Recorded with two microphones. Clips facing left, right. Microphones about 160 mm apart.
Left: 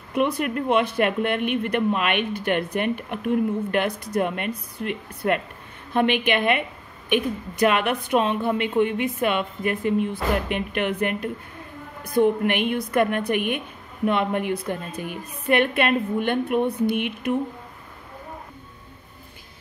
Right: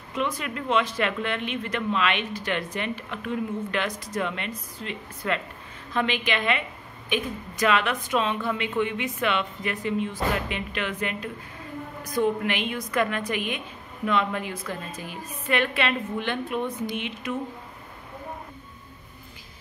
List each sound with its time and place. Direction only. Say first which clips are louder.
0.1 s a woman's voice: left 6 dB; 60° left (ahead or behind)